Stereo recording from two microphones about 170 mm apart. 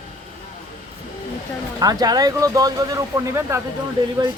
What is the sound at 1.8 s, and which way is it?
Speech, 20° right (ahead or behind).